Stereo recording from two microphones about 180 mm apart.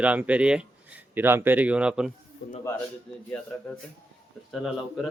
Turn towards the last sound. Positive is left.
turn(degrees=0)  # may be behind; listen again after turning